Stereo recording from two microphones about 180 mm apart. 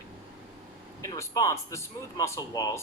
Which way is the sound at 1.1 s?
20° left (ahead or behind).